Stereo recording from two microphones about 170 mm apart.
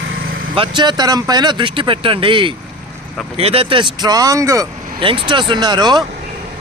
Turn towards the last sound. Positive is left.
turn(degrees=-25)  # may be behind; listen again after turning